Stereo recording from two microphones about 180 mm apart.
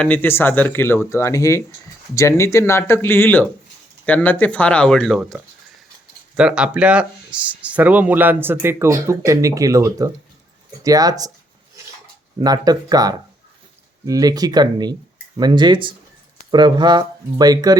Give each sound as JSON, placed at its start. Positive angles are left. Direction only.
{"t": 0.0, "sound": "speech", "side_deg": 10}
{"t": 12.4, "sound": "speech", "side_deg": -20}